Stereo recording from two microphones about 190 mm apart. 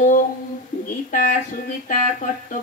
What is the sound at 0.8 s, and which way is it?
Speech, 45° left (ahead or behind).